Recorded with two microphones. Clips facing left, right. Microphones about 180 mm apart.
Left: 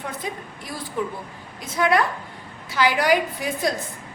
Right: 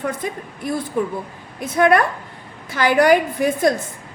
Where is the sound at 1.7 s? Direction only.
55° right (ahead or behind).